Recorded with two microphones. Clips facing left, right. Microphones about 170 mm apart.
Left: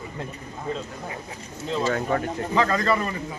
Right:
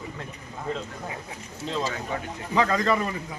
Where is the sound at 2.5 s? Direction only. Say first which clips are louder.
Even; 10° right (ahead or behind).